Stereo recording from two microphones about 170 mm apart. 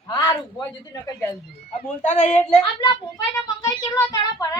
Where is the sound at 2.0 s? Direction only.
45° left (ahead or behind).